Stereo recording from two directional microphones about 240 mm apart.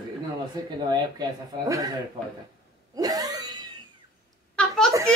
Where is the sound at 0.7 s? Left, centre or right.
Centre.